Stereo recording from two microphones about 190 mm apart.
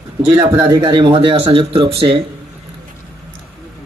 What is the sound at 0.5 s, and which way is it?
Speech, 15° right (ahead or behind).